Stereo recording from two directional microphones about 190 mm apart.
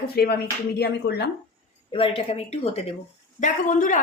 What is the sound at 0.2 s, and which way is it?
Speech, 55° left (ahead or behind).